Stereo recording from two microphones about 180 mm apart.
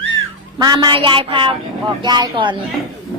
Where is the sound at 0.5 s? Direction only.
20° right (ahead or behind).